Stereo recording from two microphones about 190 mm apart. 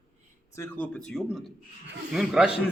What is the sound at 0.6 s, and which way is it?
Speech, 10° left (ahead or behind).